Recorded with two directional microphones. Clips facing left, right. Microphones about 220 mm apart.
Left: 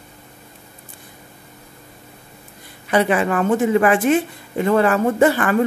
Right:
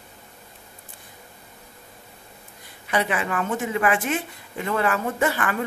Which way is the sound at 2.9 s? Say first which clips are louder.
Left 7 dB; 40° left (ahead or behind).